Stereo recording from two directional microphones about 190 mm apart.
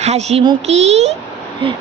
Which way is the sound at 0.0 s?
35° right (ahead or behind).